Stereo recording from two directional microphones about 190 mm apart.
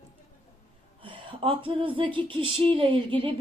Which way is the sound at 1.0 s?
25° right (ahead or behind).